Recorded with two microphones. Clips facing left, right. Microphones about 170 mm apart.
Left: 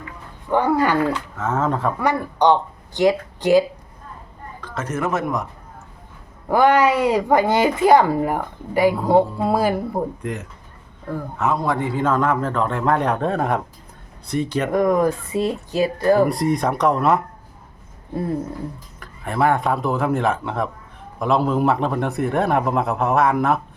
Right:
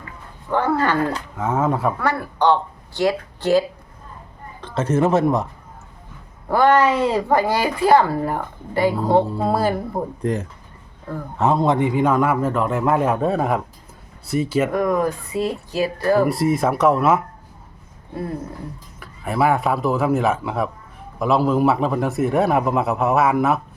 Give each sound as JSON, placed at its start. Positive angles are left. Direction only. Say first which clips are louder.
{"t": 0.5, "sound": "speech", "louder": "left 1 dB", "side_deg": 15}
{"t": 1.4, "sound": "a man's voice", "louder": "right 3 dB", "side_deg": -10}
{"t": 2.0, "sound": "speech", "louder": "left 2 dB", "side_deg": 15}
{"t": 4.6, "sound": "speech", "louder": "right 6 dB", "side_deg": -30}
{"t": 6.5, "sound": "speech", "louder": "even", "side_deg": 15}
{"t": 10.2, "sound": "a man's voice", "louder": "right 6 dB", "side_deg": -35}
{"t": 14.7, "sound": "a woman's voice", "louder": "left 2 dB", "side_deg": 20}
{"t": 16.2, "sound": "a man's voice", "louder": "right 1 dB", "side_deg": -5}
{"t": 18.9, "sound": "a man's voice", "louder": "right 1 dB", "side_deg": -5}